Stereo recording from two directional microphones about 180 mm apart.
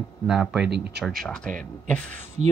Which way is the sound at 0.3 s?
5° right (ahead or behind).